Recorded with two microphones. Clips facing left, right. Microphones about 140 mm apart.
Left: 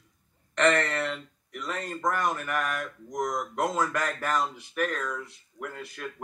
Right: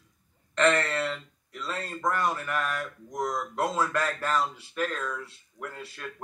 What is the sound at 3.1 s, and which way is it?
Speech, 15° left (ahead or behind).